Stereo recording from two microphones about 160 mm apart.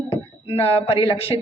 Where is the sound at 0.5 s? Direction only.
40° left (ahead or behind).